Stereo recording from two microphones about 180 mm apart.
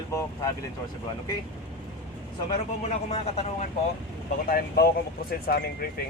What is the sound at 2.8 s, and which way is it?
Speech, 35° left (ahead or behind).